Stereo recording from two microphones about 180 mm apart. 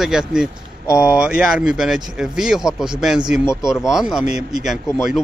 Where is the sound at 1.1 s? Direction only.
5° right (ahead or behind).